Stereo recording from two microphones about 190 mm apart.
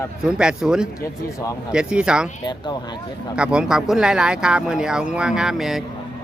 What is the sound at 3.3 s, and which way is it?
A man's voice, 5° right (ahead or behind).